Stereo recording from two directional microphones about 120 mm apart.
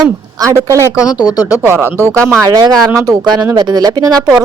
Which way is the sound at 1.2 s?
30° left (ahead or behind).